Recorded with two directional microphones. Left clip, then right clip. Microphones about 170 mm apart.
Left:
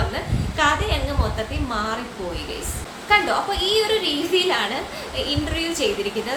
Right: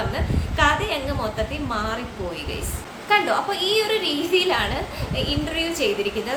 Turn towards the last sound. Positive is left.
turn(degrees=-5)  # may be behind; listen again after turning